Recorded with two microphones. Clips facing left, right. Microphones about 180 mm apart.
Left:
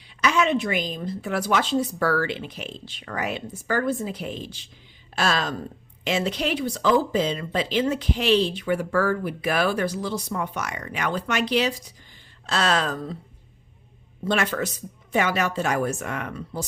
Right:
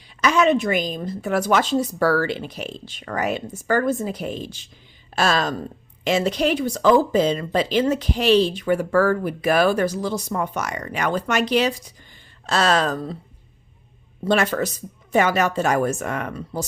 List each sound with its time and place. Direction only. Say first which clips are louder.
0.2 s speech: right 4 dB; 40° right (ahead or behind)
14.3 s speech: right 4 dB; 40° right (ahead or behind)